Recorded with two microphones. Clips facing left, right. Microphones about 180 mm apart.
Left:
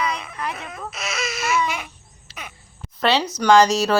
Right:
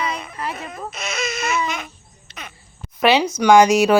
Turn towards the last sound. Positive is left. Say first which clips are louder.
# right 3 dB
turn(degrees=-15)  # may be behind; listen again after turning